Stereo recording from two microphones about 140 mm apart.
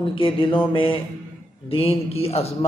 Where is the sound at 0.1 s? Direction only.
40° left (ahead or behind).